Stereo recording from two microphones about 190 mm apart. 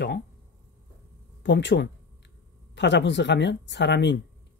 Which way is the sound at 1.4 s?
70° left (ahead or behind).